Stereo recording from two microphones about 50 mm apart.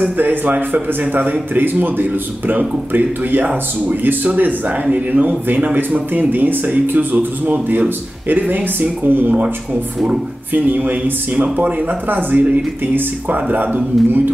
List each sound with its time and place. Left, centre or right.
0.0 s a man's voice: right
10.5 s a man's voice: right